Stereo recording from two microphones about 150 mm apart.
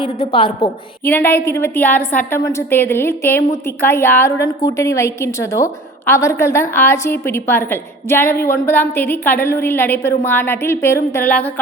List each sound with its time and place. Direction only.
0.0 s a woman's voice: 40° left (ahead or behind)
1.0 s a woman's voice: 15° left (ahead or behind)